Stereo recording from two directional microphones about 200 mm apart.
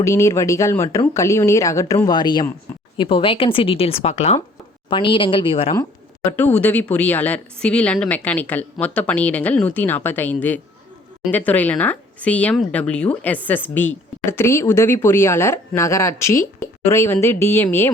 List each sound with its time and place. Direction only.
0.0 s speech: 15° left (ahead or behind)
6.3 s speech: 10° left (ahead or behind)